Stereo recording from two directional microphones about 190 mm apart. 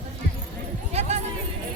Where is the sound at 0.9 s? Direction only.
35° right (ahead or behind).